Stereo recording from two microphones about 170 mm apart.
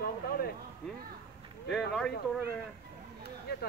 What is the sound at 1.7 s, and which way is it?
Speech, 5° left (ahead or behind).